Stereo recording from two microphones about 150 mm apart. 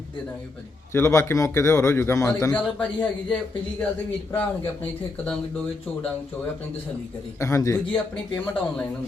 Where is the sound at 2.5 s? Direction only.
10° left (ahead or behind).